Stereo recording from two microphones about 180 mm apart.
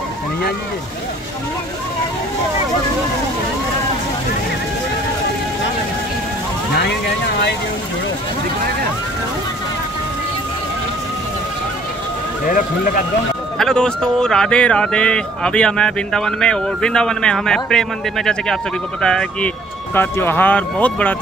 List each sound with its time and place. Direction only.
6.7 s speech: 70° left (ahead or behind)
12.4 s speech: 50° left (ahead or behind)
13.6 s speech: 5° left (ahead or behind)